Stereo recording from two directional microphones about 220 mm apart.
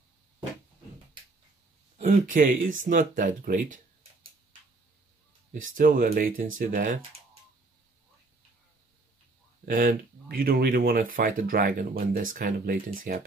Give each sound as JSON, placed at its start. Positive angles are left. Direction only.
{"t": 2.0, "sound": "speech", "side_deg": -35}
{"t": 5.5, "sound": "speech", "side_deg": -35}
{"t": 9.7, "sound": "speech", "side_deg": -40}